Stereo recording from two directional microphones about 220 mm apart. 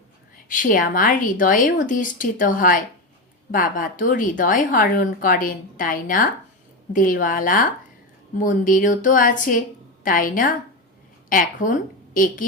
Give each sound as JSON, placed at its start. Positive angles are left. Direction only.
{"t": 0.4, "sound": "a woman's voice", "side_deg": 35}